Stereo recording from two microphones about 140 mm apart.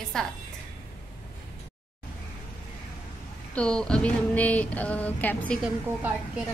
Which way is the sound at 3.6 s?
5° left (ahead or behind).